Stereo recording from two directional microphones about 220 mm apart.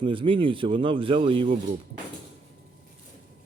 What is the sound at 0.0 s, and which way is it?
Speech, 25° right (ahead or behind).